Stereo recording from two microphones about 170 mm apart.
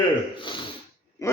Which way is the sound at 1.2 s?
20° left (ahead or behind).